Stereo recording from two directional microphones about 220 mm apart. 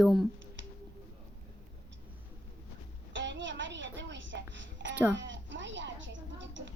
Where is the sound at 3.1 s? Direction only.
55° right (ahead or behind).